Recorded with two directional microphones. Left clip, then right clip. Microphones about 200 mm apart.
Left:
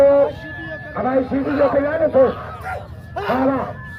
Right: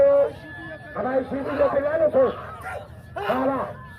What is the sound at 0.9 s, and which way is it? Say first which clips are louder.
Chatter: left 5 dB; 45° right (ahead or behind).